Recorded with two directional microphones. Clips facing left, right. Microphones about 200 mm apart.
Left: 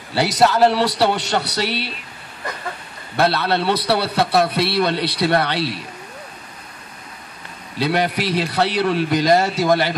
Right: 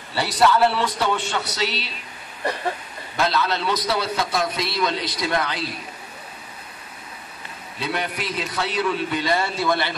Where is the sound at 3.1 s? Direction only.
65° left (ahead or behind).